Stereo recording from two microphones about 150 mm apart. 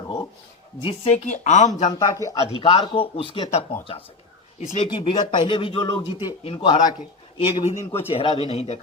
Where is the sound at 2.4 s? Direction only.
40° left (ahead or behind).